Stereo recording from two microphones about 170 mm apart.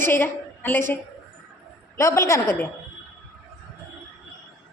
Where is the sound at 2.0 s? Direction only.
15° left (ahead or behind).